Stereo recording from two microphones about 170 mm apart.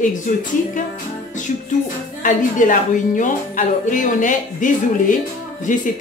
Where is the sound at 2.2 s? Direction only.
50° left (ahead or behind).